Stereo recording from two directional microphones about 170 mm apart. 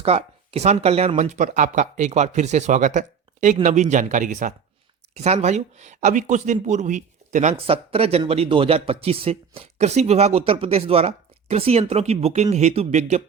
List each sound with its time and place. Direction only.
0.0 s speech: 35° right (ahead or behind)
7.7 s speech: 35° right (ahead or behind)